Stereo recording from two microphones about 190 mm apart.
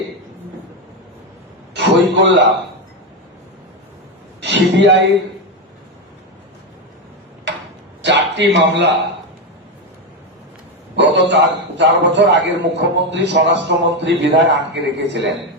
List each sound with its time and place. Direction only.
1.7 s a sound: 65° right (ahead or behind)
4.4 s a man's voice: 65° right (ahead or behind)
8.0 s a man's voice: 65° right (ahead or behind)
10.9 s a man's voice: 65° right (ahead or behind)